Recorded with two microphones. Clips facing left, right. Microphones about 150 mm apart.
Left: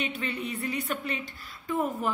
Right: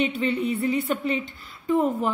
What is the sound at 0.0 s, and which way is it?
A woman's voice, 30° right (ahead or behind).